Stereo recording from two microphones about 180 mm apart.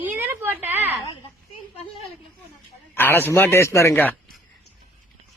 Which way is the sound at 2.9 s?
10° left (ahead or behind).